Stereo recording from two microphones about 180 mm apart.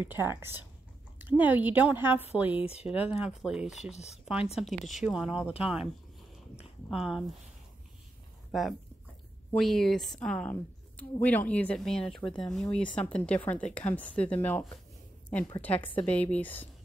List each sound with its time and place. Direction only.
0.1 s a woman's voice: 15° right (ahead or behind)
2.6 s speech: 35° left (ahead or behind)
2.9 s a woman's voice: 5° right (ahead or behind)
3.9 s speech: 35° left (ahead or behind)
4.6 s a woman's voice: centre (ahead or behind)
6.9 s a woman's voice: centre (ahead or behind)
8.5 s a woman's voice: centre (ahead or behind)
15.6 s speech: 10° left (ahead or behind)